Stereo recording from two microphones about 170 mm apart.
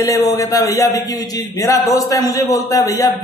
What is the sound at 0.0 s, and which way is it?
A man's voice, 20° left (ahead or behind).